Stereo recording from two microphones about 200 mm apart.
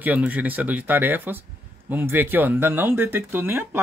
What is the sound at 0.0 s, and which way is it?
Speech, 10° right (ahead or behind).